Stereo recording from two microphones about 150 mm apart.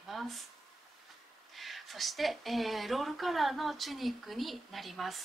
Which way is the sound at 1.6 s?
Centre (ahead or behind).